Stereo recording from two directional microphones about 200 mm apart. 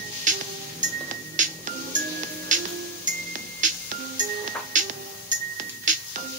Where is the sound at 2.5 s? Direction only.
40° right (ahead or behind).